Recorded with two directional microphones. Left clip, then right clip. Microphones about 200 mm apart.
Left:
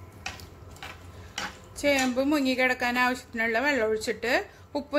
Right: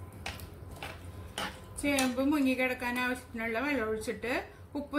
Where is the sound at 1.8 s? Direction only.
50° left (ahead or behind).